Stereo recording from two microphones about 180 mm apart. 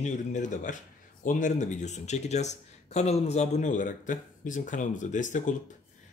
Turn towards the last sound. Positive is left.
turn(degrees=45)  # may be behind; listen again after turning